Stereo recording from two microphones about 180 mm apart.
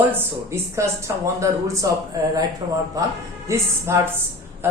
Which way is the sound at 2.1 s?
20° right (ahead or behind).